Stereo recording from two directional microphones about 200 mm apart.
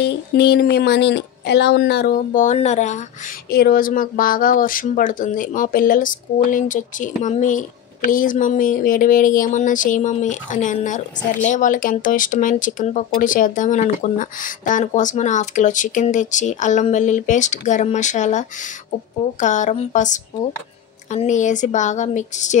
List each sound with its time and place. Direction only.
0.4 s speech: 55° left (ahead or behind); by 3.0 s 35° left (ahead or behind)
3.4 s speech: 50° left (ahead or behind)
19.4 s speech: 40° left (ahead or behind)